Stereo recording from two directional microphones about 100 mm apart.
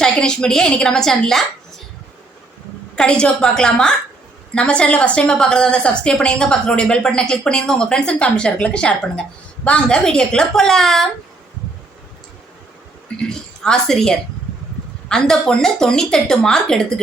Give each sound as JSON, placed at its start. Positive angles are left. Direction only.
{"t": 0.0, "sound": "a woman's voice", "side_deg": 10}
{"t": 2.9, "sound": "a woman's voice", "side_deg": 10}
{"t": 13.1, "sound": "a woman's voice", "side_deg": 5}